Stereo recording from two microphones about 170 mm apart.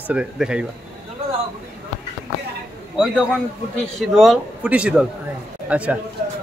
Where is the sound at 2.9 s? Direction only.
5° left (ahead or behind).